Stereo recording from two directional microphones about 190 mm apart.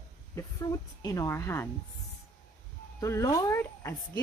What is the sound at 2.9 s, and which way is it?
Speech, 15° left (ahead or behind).